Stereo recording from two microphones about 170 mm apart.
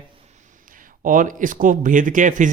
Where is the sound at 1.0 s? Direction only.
50° right (ahead or behind).